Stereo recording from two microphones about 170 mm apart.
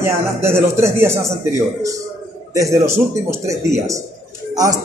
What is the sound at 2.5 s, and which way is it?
Speech, 15° right (ahead or behind).